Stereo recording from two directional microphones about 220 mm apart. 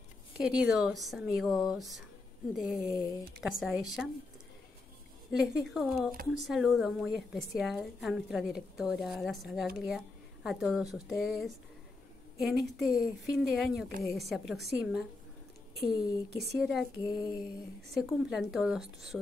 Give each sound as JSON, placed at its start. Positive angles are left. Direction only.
{"t": 0.4, "sound": "a woman's voice", "side_deg": -5}
{"t": 2.8, "sound": "speech", "side_deg": 15}
{"t": 3.3, "sound": "a woman's voice", "side_deg": 0}
{"t": 5.3, "sound": "a woman's voice", "side_deg": 0}
{"t": 16.3, "sound": "a woman's voice", "side_deg": 0}
{"t": 17.0, "sound": "speech", "side_deg": 15}
{"t": 17.9, "sound": "a woman's voice", "side_deg": 0}